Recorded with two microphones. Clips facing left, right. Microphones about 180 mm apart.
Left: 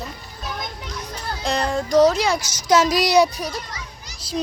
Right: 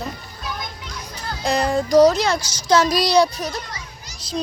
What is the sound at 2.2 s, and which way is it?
A child's voice, 15° left (ahead or behind).